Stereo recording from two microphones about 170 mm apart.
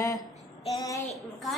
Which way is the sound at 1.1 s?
Centre (ahead or behind).